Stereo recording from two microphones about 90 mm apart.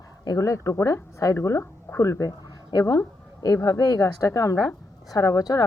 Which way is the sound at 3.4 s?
45° left (ahead or behind).